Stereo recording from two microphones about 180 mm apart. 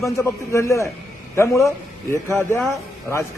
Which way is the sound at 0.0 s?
15° left (ahead or behind).